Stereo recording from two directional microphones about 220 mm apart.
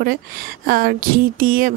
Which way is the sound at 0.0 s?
40° right (ahead or behind).